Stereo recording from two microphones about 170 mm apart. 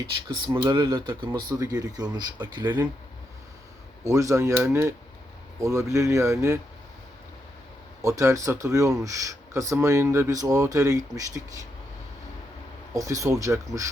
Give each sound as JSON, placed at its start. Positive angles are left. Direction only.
{"t": 0.6, "sound": "speech", "side_deg": -25}
{"t": 4.0, "sound": "speech", "side_deg": -20}
{"t": 8.0, "sound": "speech", "side_deg": -20}
{"t": 12.9, "sound": "speech", "side_deg": -20}